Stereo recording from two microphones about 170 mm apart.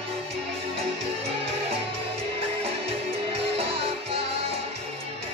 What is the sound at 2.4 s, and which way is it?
Music, 35° right (ahead or behind).